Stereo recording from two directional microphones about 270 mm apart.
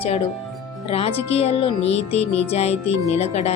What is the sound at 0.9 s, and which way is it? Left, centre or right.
Speech, left.